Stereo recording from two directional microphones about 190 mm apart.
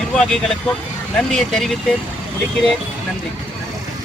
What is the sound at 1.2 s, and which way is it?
Speech, 5° left (ahead or behind).